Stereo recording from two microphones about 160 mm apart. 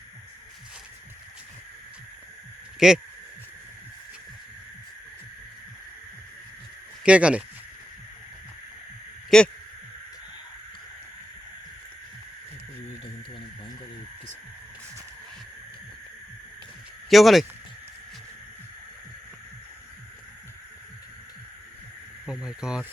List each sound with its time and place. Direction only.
2.7 s speech: 5° right (ahead or behind)
7.0 s speech: 5° right (ahead or behind)
9.3 s speech: 5° left (ahead or behind)
17.1 s speech: centre (ahead or behind)
22.3 s insect: 5° right (ahead or behind)